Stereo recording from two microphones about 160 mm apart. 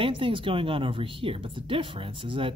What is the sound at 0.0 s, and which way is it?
Speech, 35° right (ahead or behind).